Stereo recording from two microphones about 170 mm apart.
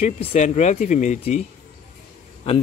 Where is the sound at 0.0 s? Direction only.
40° left (ahead or behind).